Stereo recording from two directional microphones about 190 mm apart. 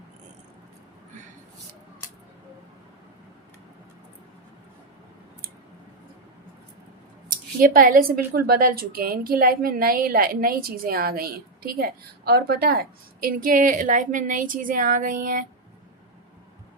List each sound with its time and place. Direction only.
7.3 s a woman's voice: 45° right (ahead or behind)